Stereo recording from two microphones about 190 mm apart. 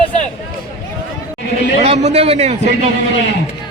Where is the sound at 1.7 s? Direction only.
35° right (ahead or behind).